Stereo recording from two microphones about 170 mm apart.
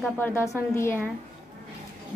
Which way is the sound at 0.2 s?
15° left (ahead or behind).